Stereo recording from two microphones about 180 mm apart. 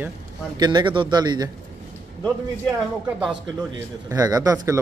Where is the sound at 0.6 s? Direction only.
25° right (ahead or behind).